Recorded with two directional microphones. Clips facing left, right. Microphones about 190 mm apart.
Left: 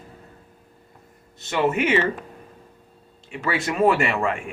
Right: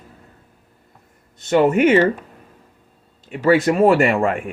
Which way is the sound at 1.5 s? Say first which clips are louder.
Right 7 dB; 50° right (ahead or behind).